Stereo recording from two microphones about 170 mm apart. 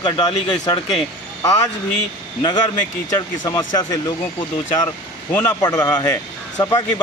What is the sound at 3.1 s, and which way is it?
Speech, 20° left (ahead or behind).